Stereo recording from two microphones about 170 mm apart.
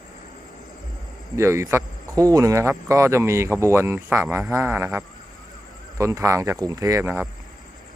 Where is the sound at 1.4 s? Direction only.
15° right (ahead or behind).